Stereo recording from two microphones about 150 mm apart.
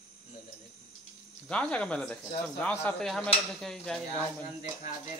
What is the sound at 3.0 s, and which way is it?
Speech, 5° left (ahead or behind).